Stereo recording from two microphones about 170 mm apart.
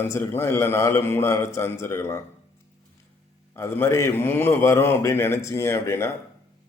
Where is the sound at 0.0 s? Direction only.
15° left (ahead or behind).